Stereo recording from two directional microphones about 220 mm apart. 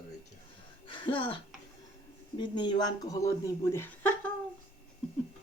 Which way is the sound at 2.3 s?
20° left (ahead or behind).